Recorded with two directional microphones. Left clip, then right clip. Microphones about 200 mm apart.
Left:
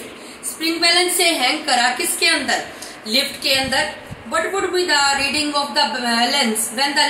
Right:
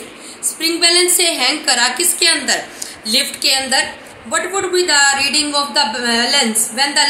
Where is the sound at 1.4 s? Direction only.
55° right (ahead or behind).